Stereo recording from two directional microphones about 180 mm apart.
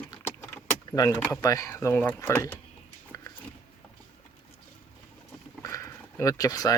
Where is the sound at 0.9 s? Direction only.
20° left (ahead or behind).